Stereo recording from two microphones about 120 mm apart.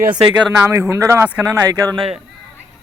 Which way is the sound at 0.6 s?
25° right (ahead or behind).